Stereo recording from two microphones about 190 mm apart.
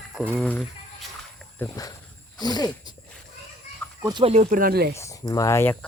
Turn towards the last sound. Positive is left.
turn(degrees=15)  # may be behind; listen again after turning